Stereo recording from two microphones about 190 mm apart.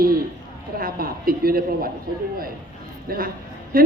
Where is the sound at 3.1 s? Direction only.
50° right (ahead or behind).